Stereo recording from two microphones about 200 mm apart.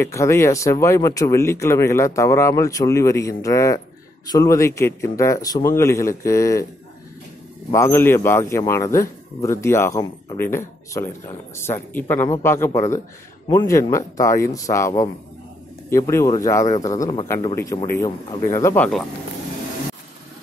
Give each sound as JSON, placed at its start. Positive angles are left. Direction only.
{"t": 0.0, "sound": "speech", "side_deg": 15}
{"t": 7.7, "sound": "speech", "side_deg": 15}